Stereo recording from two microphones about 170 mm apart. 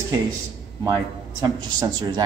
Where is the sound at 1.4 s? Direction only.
20° right (ahead or behind).